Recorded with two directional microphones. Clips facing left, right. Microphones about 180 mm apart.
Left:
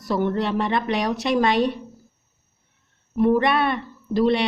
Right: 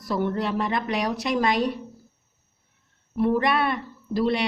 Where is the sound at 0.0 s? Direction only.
25° left (ahead or behind).